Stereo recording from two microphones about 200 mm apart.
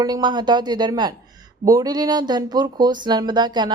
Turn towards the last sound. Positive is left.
turn(degrees=-20)  # may be behind; listen again after turning